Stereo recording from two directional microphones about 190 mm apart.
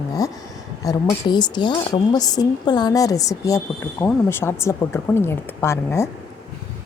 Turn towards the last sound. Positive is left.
turn(degrees=15)  # may be behind; listen again after turning